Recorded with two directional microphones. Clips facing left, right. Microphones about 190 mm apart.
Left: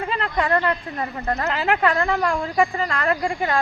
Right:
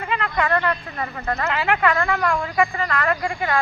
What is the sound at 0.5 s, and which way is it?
Speech, 20° left (ahead or behind).